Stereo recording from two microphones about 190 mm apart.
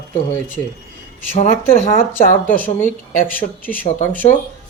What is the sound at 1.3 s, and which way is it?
Speech, 35° left (ahead or behind).